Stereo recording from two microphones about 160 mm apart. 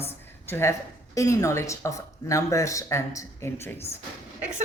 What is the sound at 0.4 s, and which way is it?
Speech, 15° left (ahead or behind).